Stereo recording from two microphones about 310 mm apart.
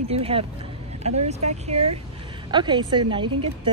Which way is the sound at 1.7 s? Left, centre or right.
Right.